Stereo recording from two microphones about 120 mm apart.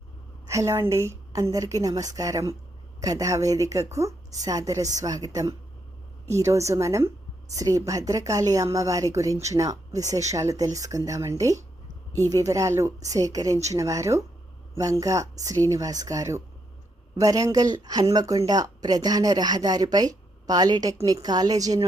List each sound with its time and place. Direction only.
0.4 s speech: 25° right (ahead or behind)